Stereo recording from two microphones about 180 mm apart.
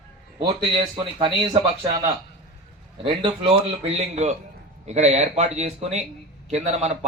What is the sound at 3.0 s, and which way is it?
A man's voice, 30° right (ahead or behind).